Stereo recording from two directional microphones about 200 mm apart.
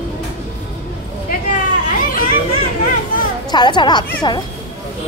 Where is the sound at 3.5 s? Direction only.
20° left (ahead or behind).